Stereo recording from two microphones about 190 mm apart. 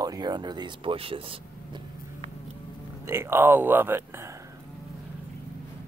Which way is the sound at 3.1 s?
10° right (ahead or behind).